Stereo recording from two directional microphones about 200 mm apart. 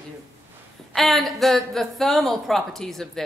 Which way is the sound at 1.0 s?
Centre (ahead or behind).